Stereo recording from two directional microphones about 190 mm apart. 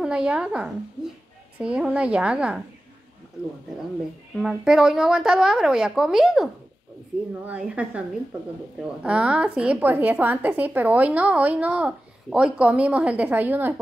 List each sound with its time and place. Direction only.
0.0 s a woman's voice: 5° right (ahead or behind)
4.4 s a woman's voice: 5° right (ahead or behind)